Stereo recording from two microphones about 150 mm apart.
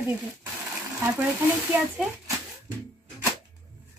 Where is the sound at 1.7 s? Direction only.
10° right (ahead or behind).